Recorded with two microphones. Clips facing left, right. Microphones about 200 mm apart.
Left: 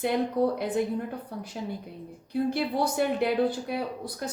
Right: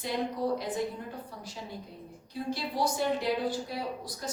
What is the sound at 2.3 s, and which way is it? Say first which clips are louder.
Speech: left 7 dB; 60° left (ahead or behind).